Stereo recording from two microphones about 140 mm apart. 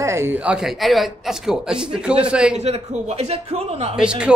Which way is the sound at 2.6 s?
50° right (ahead or behind).